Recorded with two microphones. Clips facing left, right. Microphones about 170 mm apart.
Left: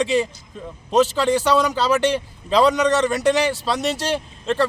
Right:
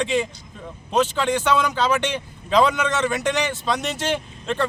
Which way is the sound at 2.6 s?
Centre (ahead or behind).